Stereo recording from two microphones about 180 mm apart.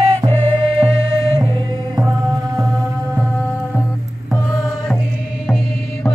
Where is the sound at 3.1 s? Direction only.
10° right (ahead or behind).